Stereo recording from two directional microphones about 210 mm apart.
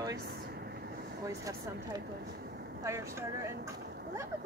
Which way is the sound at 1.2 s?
15° right (ahead or behind).